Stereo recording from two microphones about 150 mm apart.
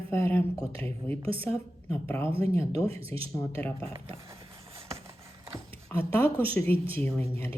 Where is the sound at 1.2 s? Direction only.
40° right (ahead or behind).